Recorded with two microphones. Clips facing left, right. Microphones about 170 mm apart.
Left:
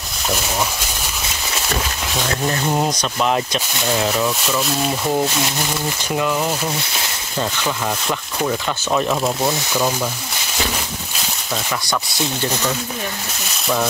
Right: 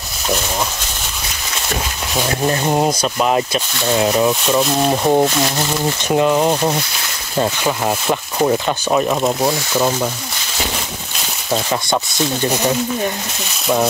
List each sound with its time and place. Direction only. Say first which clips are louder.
2.4 s speech: right 4 dB; 30° right (ahead or behind)
2.9 s speech: right 3 dB; 10° right (ahead or behind)
4.6 s speech: right 5 dB; 45° right (ahead or behind)
6.0 s speech: right 7 dB; 30° right (ahead or behind)
8.9 s speech: right 2 dB; 15° right (ahead or behind)
11.5 s speech: right 5 dB; 30° right (ahead or behind)
12.1 s speech: right 4 dB; 15° right (ahead or behind)